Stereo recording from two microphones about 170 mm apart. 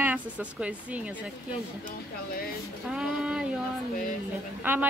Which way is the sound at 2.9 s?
5° right (ahead or behind).